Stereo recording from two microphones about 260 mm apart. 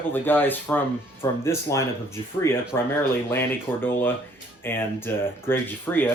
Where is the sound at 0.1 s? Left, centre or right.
Centre.